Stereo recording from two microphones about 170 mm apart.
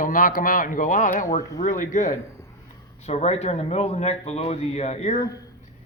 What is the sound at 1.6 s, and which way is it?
A man's voice, 45° left (ahead or behind).